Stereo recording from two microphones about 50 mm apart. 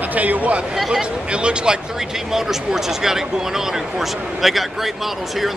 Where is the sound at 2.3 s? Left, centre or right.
Centre.